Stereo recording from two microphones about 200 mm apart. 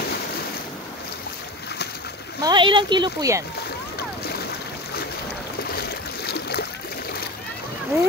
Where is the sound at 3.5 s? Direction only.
50° left (ahead or behind).